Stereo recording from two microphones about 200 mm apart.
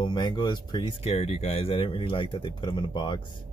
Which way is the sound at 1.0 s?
35° left (ahead or behind).